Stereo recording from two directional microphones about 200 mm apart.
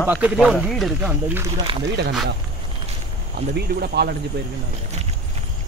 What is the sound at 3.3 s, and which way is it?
Speech, 55° right (ahead or behind).